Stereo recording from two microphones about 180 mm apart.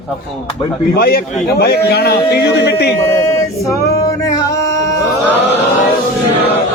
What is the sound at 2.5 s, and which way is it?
Speech, 70° left (ahead or behind).